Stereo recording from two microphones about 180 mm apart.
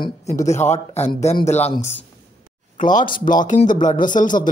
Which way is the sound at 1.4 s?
35° left (ahead or behind).